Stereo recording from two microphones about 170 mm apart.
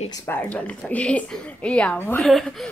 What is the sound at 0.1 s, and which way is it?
Speech, 20° left (ahead or behind).